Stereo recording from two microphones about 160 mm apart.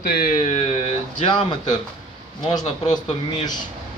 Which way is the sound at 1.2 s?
30° left (ahead or behind).